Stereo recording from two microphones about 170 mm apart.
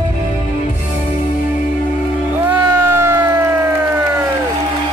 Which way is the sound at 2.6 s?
15° right (ahead or behind).